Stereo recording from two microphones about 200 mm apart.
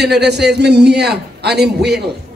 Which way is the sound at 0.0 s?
55° right (ahead or behind).